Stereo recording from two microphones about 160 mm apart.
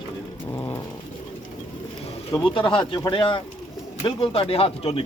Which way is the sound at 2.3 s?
30° left (ahead or behind).